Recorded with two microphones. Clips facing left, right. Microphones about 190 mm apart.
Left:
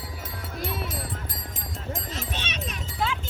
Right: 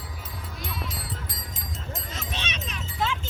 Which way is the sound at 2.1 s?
45° left (ahead or behind).